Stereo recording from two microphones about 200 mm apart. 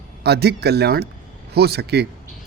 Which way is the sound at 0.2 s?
55° right (ahead or behind).